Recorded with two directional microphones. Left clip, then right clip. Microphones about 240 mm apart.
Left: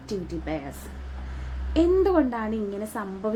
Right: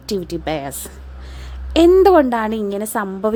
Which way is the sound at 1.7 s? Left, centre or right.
Right.